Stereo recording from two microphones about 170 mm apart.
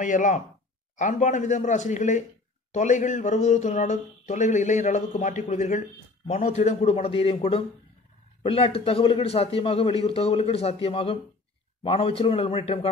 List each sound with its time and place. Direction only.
0.0 s a man's voice: 50° left (ahead or behind)